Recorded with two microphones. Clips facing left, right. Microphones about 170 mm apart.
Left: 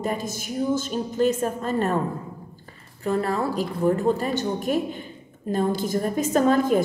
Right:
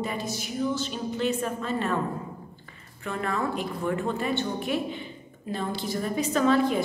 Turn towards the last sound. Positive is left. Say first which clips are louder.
# left 3 dB
turn(degrees=45)  # may be behind; listen again after turning